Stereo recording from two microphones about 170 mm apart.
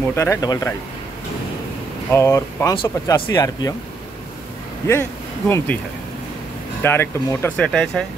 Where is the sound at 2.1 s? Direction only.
15° left (ahead or behind).